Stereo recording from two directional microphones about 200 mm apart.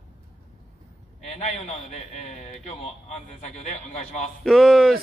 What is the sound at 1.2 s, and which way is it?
A man's voice, 30° left (ahead or behind).